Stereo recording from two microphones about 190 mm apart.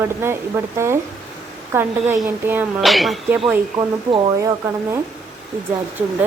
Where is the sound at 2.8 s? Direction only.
Centre (ahead or behind).